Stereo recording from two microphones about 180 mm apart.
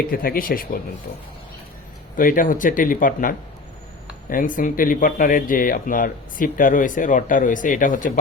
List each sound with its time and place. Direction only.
0.1 s speech: 55° left (ahead or behind)
2.1 s speech: 50° left (ahead or behind)